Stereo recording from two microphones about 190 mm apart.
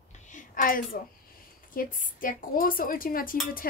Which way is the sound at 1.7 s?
45° left (ahead or behind).